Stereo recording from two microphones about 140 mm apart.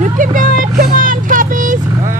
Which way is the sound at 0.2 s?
75° right (ahead or behind).